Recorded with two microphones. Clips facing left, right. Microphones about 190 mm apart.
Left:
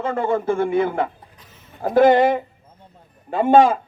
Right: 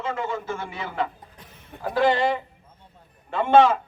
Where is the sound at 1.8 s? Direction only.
45° left (ahead or behind).